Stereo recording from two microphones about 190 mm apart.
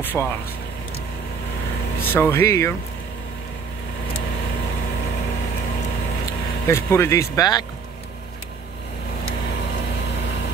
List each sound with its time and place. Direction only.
0.0 s speech: 10° left (ahead or behind)
2.0 s speech: 10° left (ahead or behind)
6.7 s speech: 15° left (ahead or behind)